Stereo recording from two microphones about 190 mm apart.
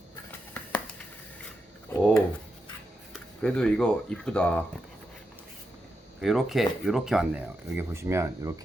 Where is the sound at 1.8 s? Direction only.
5° left (ahead or behind).